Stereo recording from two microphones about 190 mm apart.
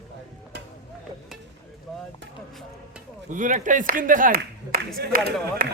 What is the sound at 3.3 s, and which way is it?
Speech, 40° right (ahead or behind).